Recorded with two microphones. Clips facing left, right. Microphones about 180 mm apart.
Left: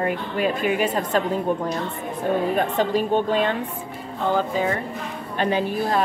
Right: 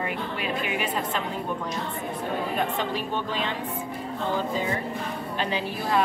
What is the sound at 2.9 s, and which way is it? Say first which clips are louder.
Speech: left 9 dB; 50° left (ahead or behind).